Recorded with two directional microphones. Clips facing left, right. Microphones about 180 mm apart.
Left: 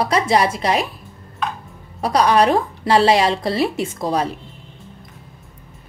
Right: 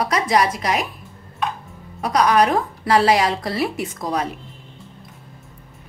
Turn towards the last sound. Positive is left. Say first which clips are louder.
# left 3 dB
turn(degrees=30)  # may be behind; listen again after turning